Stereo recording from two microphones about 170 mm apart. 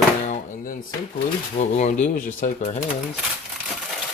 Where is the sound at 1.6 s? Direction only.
45° left (ahead or behind).